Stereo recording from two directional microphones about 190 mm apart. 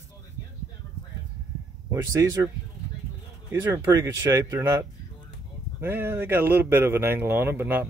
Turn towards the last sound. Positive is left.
turn(degrees=-10)  # may be behind; listen again after turning